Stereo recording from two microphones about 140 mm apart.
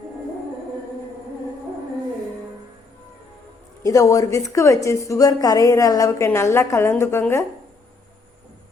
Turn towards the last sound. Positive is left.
turn(degrees=15)  # may be behind; listen again after turning